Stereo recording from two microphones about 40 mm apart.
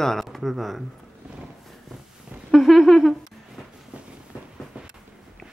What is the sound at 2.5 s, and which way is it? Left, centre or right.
Speech, centre.